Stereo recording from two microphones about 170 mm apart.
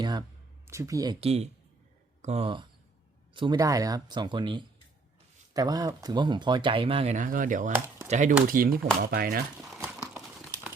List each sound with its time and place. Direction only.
0.0 s a sound: 25° right (ahead or behind)
0.7 s speech: 15° right (ahead or behind)
1.2 s speech: 35° right (ahead or behind)
8.4 s speech: 55° right (ahead or behind)
9.7 s crumpling: 10° right (ahead or behind)